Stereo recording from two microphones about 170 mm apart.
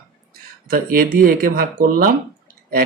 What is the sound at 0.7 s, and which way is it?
Speech, 60° right (ahead or behind).